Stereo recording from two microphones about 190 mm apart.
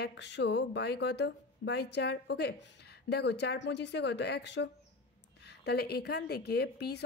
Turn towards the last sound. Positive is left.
turn(degrees=60)  # may be behind; listen again after turning